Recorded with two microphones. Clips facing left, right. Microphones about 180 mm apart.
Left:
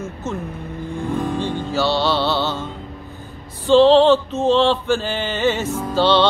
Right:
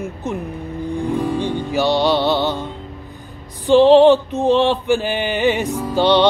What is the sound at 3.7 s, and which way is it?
Mantra, 15° right (ahead or behind).